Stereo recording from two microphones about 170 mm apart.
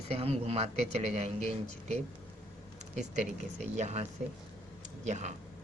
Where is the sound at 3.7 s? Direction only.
40° right (ahead or behind).